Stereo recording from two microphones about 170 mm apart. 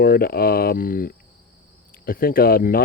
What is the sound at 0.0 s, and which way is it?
Speech, 60° left (ahead or behind).